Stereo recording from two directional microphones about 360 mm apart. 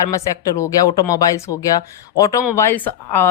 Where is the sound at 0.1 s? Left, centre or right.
Centre.